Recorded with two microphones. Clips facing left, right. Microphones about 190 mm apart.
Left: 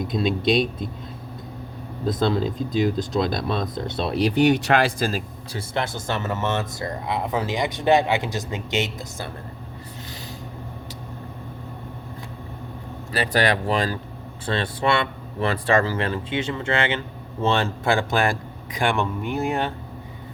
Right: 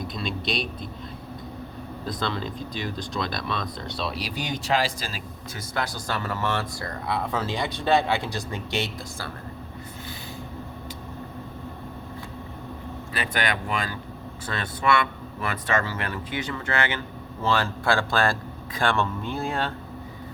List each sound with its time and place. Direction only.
0.1 s speech: 50° left (ahead or behind)
2.2 s speech: 45° left (ahead or behind)
5.5 s speech: 25° left (ahead or behind)
13.1 s a man's voice: 35° left (ahead or behind); by 19.7 s 20° left (ahead or behind)